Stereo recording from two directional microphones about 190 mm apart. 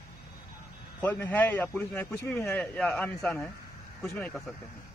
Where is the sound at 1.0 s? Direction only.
10° left (ahead or behind).